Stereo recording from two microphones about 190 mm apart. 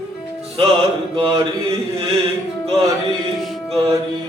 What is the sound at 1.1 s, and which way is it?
Music, 30° right (ahead or behind).